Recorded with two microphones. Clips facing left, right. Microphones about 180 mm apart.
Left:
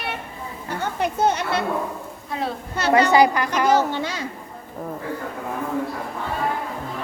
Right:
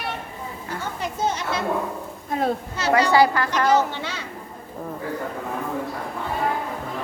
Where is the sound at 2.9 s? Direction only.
20° left (ahead or behind).